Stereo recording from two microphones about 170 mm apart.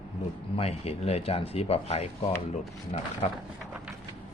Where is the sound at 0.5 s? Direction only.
35° left (ahead or behind).